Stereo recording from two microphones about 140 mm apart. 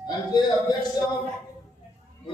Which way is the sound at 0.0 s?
30° left (ahead or behind).